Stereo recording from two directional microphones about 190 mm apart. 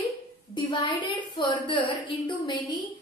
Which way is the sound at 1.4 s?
25° left (ahead or behind).